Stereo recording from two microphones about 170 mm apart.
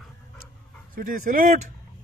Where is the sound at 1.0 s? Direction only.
50° right (ahead or behind).